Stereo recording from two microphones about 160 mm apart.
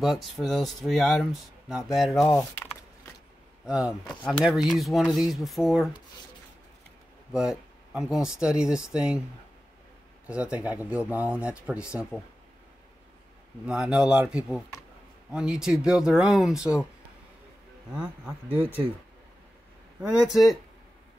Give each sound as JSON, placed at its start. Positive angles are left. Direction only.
{"t": 0.0, "sound": "speech", "side_deg": 0}
{"t": 3.6, "sound": "speech", "side_deg": -5}
{"t": 7.3, "sound": "speech", "side_deg": -5}
{"t": 10.2, "sound": "speech", "side_deg": -5}
{"t": 13.7, "sound": "speech", "side_deg": -5}
{"t": 17.9, "sound": "speech", "side_deg": -5}
{"t": 20.0, "sound": "speech", "side_deg": -5}